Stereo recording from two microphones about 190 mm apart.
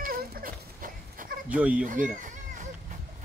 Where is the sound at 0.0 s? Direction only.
50° right (ahead or behind).